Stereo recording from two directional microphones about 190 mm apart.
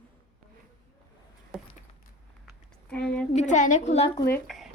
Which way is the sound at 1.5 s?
Centre (ahead or behind).